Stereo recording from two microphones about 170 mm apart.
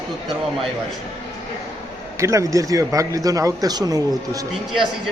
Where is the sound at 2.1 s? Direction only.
20° right (ahead or behind).